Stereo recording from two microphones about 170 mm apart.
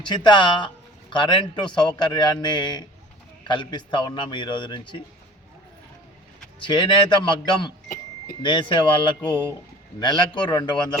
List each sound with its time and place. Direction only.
0.0 s a man's voice: 25° left (ahead or behind)
6.6 s a man's voice: 25° left (ahead or behind)